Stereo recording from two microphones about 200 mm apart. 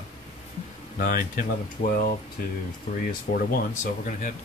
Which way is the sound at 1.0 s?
45° left (ahead or behind).